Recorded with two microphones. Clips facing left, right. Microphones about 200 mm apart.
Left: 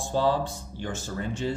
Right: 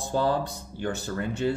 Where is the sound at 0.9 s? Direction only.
60° right (ahead or behind).